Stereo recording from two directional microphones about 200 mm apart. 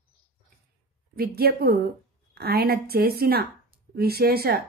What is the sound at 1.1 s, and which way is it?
A woman's voice, 50° right (ahead or behind).